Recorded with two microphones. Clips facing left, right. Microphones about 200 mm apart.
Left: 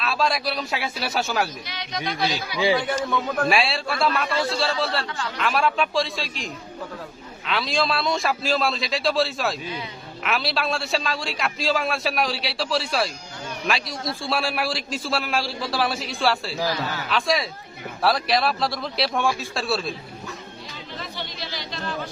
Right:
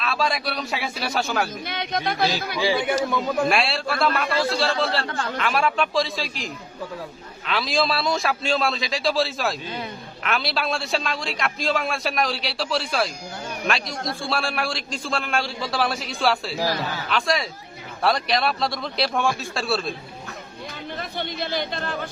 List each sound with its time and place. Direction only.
0.0 s a man's voice: centre (ahead or behind)
1.6 s music: 55° right (ahead or behind)
2.7 s a man's voice: 5° right (ahead or behind)
5.0 s music: 50° right (ahead or behind)
5.4 s a man's voice: centre (ahead or behind)
16.8 s a man's voice: 15° right (ahead or behind)
17.1 s a man's voice: centre (ahead or behind)
21.0 s speech: 55° right (ahead or behind)